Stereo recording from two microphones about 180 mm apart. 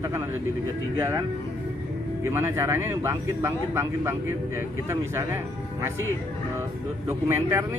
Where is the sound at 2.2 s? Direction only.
15° right (ahead or behind).